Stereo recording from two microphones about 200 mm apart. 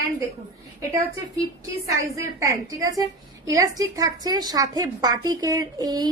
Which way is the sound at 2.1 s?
15° right (ahead or behind).